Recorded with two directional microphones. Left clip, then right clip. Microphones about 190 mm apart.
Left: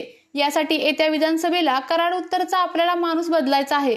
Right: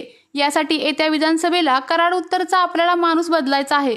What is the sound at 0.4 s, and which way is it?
A woman's voice, 20° right (ahead or behind).